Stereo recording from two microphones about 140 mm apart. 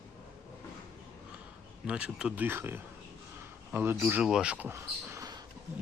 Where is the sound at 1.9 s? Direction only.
10° right (ahead or behind).